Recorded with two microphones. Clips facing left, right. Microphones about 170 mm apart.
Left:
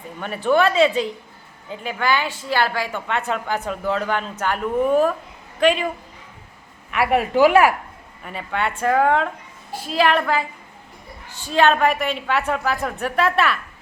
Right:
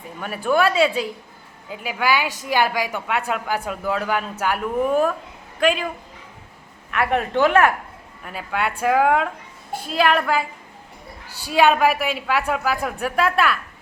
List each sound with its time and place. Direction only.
0.2 s a woman's voice: 5° right (ahead or behind)
6.9 s a woman's voice: 5° left (ahead or behind)
11.4 s a woman's voice: 10° right (ahead or behind)